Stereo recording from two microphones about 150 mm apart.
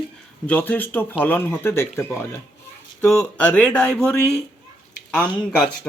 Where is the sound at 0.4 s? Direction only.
10° left (ahead or behind).